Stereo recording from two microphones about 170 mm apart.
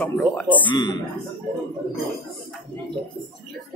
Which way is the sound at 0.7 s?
25° left (ahead or behind).